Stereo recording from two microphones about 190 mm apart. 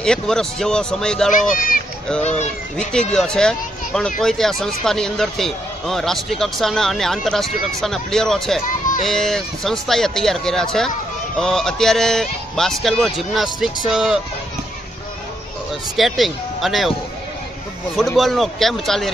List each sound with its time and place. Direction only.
0.0 s speech: 5° left (ahead or behind)
2.2 s speech: 35° left (ahead or behind)
2.8 s speech: 5° left (ahead or behind)
8.6 s speech: 45° left (ahead or behind)
9.0 s speech: centre (ahead or behind)
16.0 s speech: centre (ahead or behind)
18.1 s speech: centre (ahead or behind)